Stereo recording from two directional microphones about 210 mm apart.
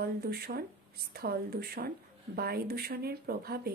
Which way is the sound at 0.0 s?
45° right (ahead or behind).